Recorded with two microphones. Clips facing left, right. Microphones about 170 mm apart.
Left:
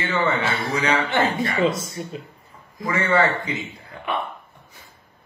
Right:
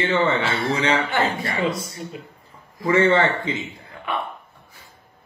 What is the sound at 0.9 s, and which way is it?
Speech, 25° left (ahead or behind).